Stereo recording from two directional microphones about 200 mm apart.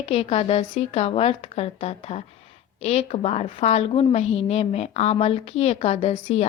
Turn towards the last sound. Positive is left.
turn(degrees=30)  # may be behind; listen again after turning